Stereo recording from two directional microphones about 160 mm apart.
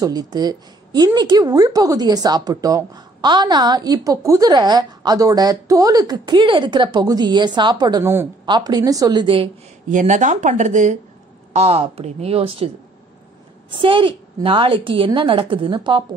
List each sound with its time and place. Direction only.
0.0 s a woman's voice: 25° right (ahead or behind)
8.0 s a woman's voice: 15° right (ahead or behind)
8.5 s a woman's voice: 25° right (ahead or behind)
9.8 s a woman's voice: 50° right (ahead or behind); by 16.0 s 30° right (ahead or behind)